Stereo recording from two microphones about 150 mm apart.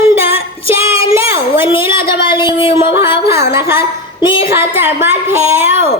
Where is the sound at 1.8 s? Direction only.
15° right (ahead or behind).